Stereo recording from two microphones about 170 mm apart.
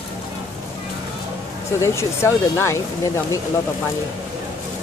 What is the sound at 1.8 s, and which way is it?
Speech, 15° left (ahead or behind).